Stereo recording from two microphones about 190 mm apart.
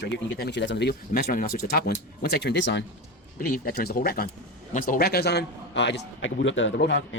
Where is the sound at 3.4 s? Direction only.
50° left (ahead or behind); by 7.2 s 70° left (ahead or behind).